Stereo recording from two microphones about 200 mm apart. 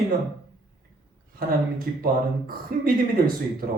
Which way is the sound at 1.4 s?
45° right (ahead or behind).